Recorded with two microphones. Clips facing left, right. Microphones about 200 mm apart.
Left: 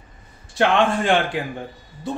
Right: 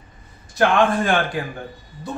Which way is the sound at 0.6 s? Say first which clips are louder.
Right 1 dB; 25° left (ahead or behind).